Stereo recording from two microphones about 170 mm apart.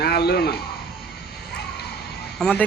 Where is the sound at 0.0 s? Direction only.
70° left (ahead or behind).